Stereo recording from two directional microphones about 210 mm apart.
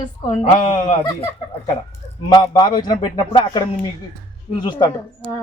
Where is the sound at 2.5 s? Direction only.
20° left (ahead or behind).